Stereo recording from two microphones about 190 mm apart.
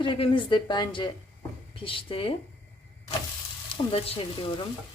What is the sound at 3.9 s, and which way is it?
Speech, 30° left (ahead or behind).